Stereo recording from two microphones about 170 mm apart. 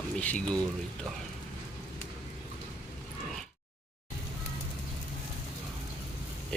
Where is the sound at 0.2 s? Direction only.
5° left (ahead or behind).